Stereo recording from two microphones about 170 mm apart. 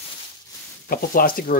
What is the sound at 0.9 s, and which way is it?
Speech, 60° left (ahead or behind).